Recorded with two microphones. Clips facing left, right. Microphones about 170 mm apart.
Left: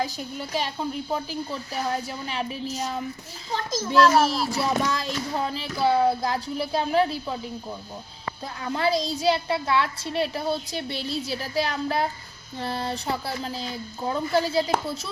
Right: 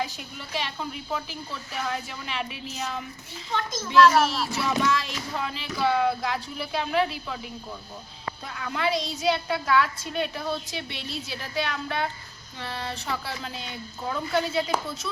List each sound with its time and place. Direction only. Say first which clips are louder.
0.0 s a child's voice: left 4 dB; 40° left (ahead or behind)
8.5 s a child's voice: left 3 dB; 35° left (ahead or behind)